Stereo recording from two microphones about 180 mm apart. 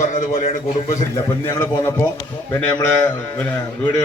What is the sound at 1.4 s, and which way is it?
Speech, 15° left (ahead or behind).